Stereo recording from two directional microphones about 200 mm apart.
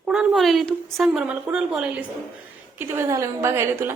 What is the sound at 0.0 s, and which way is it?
A woman's voice, 5° right (ahead or behind).